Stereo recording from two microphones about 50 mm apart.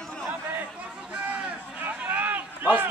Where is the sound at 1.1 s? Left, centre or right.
Right.